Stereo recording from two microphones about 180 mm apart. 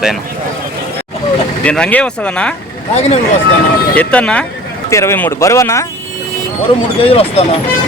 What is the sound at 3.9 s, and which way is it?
A man's voice, 5° left (ahead or behind).